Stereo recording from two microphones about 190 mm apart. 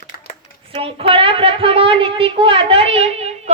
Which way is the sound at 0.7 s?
30° right (ahead or behind).